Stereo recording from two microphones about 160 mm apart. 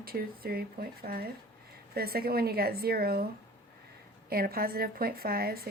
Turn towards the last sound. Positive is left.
turn(degrees=-70)  # may be behind; listen again after turning